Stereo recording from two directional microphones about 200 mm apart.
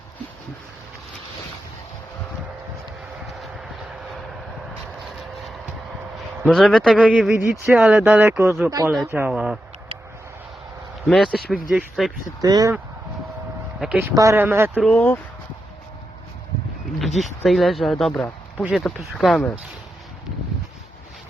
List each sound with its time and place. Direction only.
3.3 s a sound: centre (ahead or behind)
4.7 s a sound: centre (ahead or behind)
6.4 s speech: centre (ahead or behind)
11.0 s speech: centre (ahead or behind)
12.4 s speech: 20° right (ahead or behind)
13.7 s speech: 5° right (ahead or behind)
14.8 s speech: 5° left (ahead or behind)
17.2 s speech: centre (ahead or behind)